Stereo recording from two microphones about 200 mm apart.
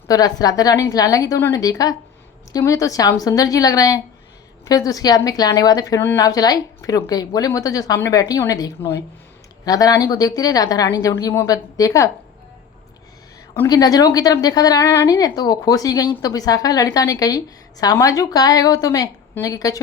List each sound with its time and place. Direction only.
0.1 s speech: 20° left (ahead or behind)
13.6 s speech: 20° left (ahead or behind)